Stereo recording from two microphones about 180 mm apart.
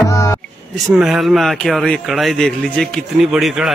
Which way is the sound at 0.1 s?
20° left (ahead or behind).